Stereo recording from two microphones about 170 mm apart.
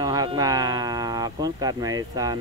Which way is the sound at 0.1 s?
20° right (ahead or behind).